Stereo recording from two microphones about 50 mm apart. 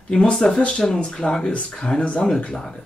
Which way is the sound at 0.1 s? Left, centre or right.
Centre.